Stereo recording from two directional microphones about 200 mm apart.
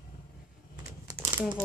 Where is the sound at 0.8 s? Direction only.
15° right (ahead or behind).